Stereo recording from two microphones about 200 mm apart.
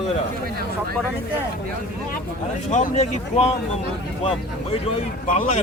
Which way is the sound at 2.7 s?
35° left (ahead or behind).